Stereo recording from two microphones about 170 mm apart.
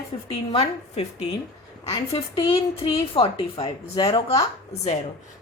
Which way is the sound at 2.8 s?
35° left (ahead or behind).